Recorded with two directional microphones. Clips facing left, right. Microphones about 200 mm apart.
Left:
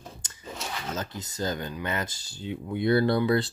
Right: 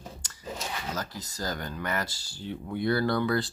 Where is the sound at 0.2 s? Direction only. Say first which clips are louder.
Even; 20° left (ahead or behind).